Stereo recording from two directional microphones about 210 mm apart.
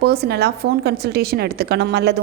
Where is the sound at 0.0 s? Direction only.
50° right (ahead or behind).